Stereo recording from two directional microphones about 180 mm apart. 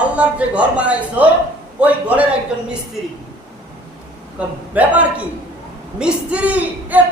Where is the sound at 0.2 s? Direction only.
5° right (ahead or behind).